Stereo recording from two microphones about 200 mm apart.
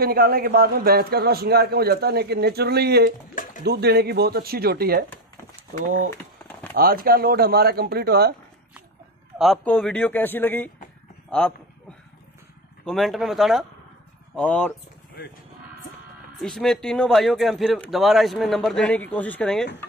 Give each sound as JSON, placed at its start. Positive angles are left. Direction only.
{"t": 0.0, "sound": "a man's voice", "side_deg": -50}
{"t": 6.7, "sound": "a man's voice", "side_deg": -50}
{"t": 9.4, "sound": "a man's voice", "side_deg": 0}
{"t": 12.8, "sound": "speech", "side_deg": 0}
{"t": 16.3, "sound": "speech", "side_deg": 0}